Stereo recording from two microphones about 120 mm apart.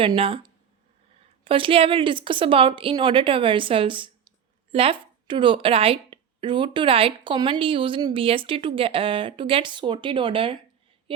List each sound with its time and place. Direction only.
0.2 s speech: 50° right (ahead or behind)